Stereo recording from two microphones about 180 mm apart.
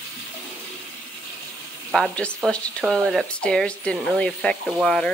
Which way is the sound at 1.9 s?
5° left (ahead or behind).